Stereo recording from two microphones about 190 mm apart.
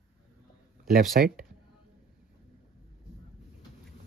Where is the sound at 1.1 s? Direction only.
55° right (ahead or behind).